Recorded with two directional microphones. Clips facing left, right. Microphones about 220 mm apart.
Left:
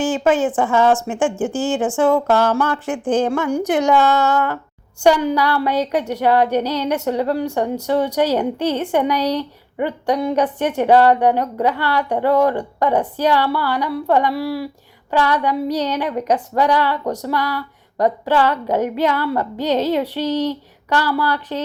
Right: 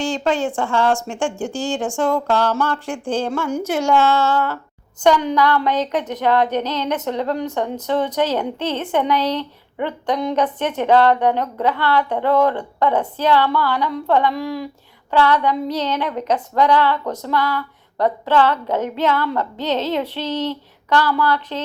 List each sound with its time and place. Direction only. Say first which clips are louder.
0.3 s speech: left 4 dB; 5° left (ahead or behind)
0.6 s speech: left 3 dB; 15° left (ahead or behind)
1.0 s speech: left 4 dB; 5° left (ahead or behind)